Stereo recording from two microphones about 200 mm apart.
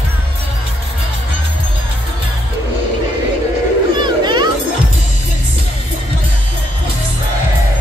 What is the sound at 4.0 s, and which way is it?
Children playing, 20° right (ahead or behind).